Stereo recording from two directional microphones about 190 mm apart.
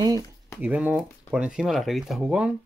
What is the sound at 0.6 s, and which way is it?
Speech, 10° right (ahead or behind).